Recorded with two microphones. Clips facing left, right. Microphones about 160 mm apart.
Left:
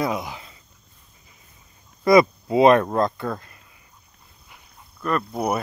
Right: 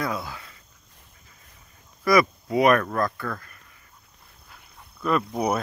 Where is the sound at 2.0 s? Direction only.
25° left (ahead or behind).